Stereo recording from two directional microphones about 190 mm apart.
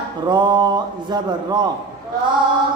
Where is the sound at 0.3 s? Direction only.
20° right (ahead or behind).